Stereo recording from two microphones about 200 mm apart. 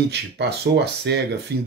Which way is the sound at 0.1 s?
55° right (ahead or behind).